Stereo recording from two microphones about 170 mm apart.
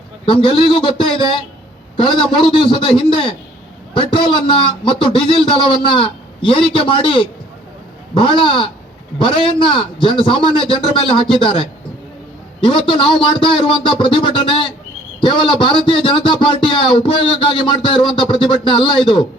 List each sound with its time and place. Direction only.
0.3 s a man's voice: 30° left (ahead or behind)